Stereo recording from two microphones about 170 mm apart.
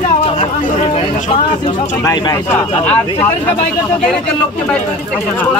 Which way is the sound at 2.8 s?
5° left (ahead or behind).